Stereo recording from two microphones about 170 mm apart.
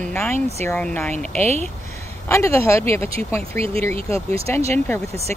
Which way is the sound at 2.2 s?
15° left (ahead or behind).